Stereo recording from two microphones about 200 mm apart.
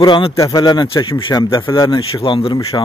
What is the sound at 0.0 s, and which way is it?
Speech, 20° left (ahead or behind).